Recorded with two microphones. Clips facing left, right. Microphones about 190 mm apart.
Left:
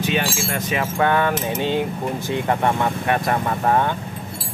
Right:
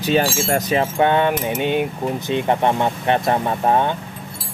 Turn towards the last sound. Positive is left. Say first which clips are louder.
# right 1 dB
turn(degrees=-20)  # may be behind; listen again after turning